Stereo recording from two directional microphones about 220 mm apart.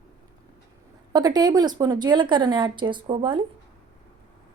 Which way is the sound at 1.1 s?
20° right (ahead or behind).